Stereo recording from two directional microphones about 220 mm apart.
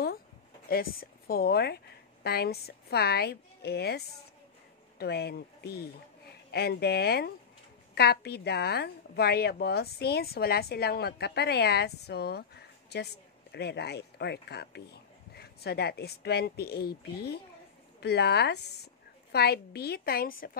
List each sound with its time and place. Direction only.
0.7 s a woman's voice: 45° left (ahead or behind)